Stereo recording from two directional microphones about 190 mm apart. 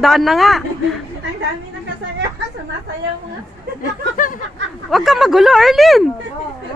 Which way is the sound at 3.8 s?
45° left (ahead or behind).